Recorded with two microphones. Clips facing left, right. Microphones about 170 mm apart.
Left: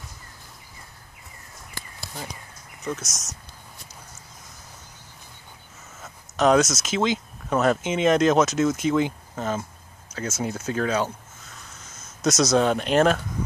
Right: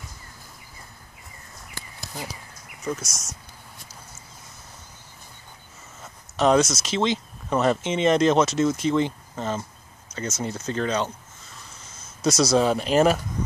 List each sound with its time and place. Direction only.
1.8 s a sound: 20° right (ahead or behind)
2.8 s speech: centre (ahead or behind)
3.1 s speech: 45° left (ahead or behind)
6.0 s speech: centre (ahead or behind)